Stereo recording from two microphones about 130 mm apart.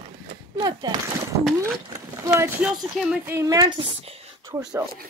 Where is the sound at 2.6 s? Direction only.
5° right (ahead or behind).